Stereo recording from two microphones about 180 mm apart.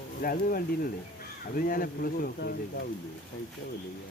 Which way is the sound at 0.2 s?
55° left (ahead or behind).